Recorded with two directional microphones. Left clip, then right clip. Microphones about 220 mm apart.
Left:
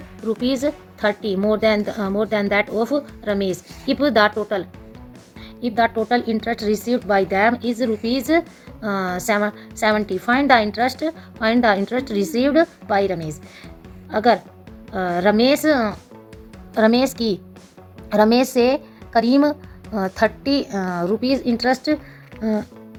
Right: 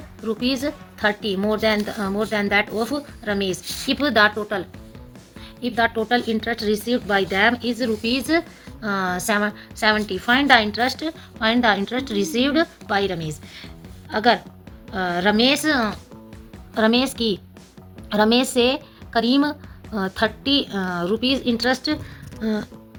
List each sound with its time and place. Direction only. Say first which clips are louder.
0.3 s a woman's voice: left 3 dB; 55° left (ahead or behind)
5.6 s a woman's voice: left 2 dB; 50° left (ahead or behind)
18.3 s a woman's voice: left 2 dB; 25° left (ahead or behind)
20.1 s a woman's voice: left 1 dB; 25° left (ahead or behind)
20.7 s a woman's voice: left 2 dB; 40° left (ahead or behind)